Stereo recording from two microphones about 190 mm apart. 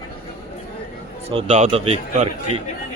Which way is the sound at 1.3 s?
30° right (ahead or behind).